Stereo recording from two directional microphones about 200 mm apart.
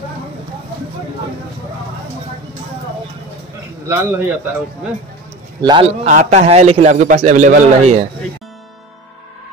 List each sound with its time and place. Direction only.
3.8 s a man's voice: 10° right (ahead or behind)
5.6 s a man's voice: 20° right (ahead or behind)
6.0 s a man's voice: 35° right (ahead or behind)